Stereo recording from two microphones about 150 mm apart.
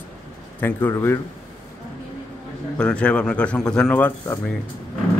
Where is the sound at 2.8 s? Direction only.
5° left (ahead or behind).